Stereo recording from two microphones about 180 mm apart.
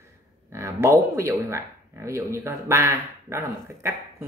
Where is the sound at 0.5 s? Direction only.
15° right (ahead or behind).